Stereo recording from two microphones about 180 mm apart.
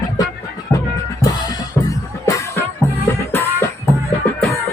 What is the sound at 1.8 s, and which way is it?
Music, 20° left (ahead or behind).